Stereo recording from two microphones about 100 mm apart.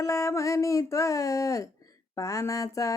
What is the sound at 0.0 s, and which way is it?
Music, 30° left (ahead or behind).